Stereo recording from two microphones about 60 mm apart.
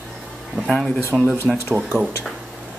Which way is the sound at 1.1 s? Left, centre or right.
Centre.